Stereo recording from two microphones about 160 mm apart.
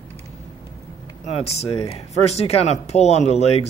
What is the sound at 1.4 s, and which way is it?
Speech, 40° left (ahead or behind).